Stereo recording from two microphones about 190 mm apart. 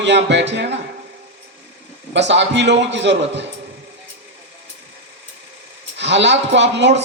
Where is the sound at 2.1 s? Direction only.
70° right (ahead or behind).